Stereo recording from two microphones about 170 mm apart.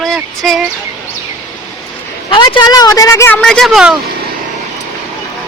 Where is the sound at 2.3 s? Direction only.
30° left (ahead or behind).